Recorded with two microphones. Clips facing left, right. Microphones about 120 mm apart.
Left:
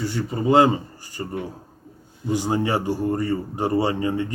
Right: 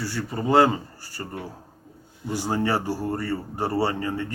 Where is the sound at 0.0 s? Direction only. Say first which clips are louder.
Left 4 dB; 20° left (ahead or behind).